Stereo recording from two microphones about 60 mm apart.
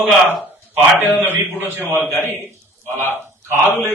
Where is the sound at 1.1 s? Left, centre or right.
Left.